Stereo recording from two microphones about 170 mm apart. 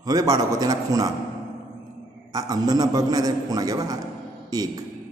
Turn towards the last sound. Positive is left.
turn(degrees=-20)  # may be behind; listen again after turning